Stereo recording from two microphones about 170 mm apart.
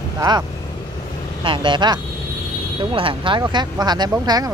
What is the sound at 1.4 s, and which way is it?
Speech, 30° right (ahead or behind).